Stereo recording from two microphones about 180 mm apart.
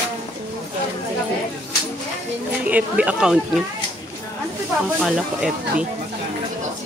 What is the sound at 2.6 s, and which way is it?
Speech, 10° right (ahead or behind).